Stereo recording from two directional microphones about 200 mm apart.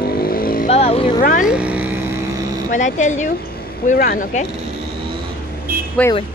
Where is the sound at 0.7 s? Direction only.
30° left (ahead or behind).